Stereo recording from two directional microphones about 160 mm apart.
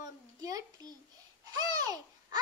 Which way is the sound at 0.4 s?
20° right (ahead or behind).